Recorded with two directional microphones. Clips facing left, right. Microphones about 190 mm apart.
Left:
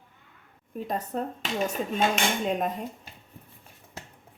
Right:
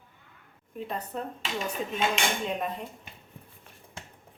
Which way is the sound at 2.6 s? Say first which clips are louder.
Left 4 dB; 45° left (ahead or behind).